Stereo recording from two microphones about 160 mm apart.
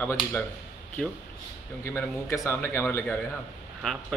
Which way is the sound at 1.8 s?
15° left (ahead or behind).